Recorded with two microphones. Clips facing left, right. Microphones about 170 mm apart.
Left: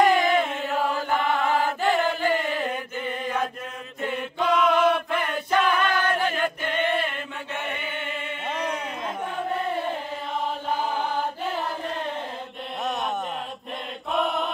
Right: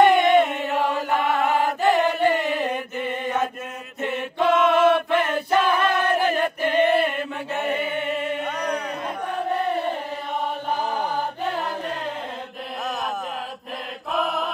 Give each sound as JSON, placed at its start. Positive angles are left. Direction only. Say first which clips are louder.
{"t": 0.0, "sound": "chant", "louder": "right 4 dB", "side_deg": 0}
{"t": 4.0, "sound": "choir", "louder": "right 4 dB", "side_deg": 0}
{"t": 6.0, "sound": "chant", "louder": "right 3 dB", "side_deg": -35}
{"t": 14.1, "sound": "chant", "louder": "even", "side_deg": 0}